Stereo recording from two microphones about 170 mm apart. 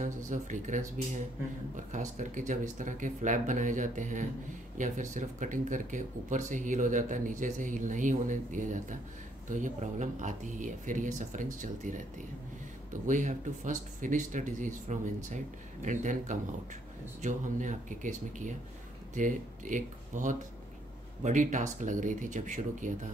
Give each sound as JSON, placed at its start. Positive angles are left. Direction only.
{"t": 0.0, "sound": "speech", "side_deg": -45}